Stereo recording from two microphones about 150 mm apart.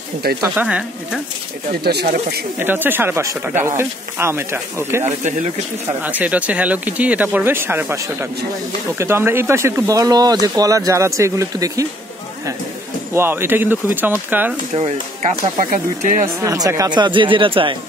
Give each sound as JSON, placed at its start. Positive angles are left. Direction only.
{"t": 0.4, "sound": "speech", "side_deg": -10}
{"t": 1.7, "sound": "speech", "side_deg": -90}
{"t": 2.6, "sound": "speech", "side_deg": -15}
{"t": 6.0, "sound": "speech", "side_deg": -10}
{"t": 13.1, "sound": "speech", "side_deg": -15}
{"t": 14.7, "sound": "speech", "side_deg": -45}
{"t": 16.3, "sound": "speech", "side_deg": -25}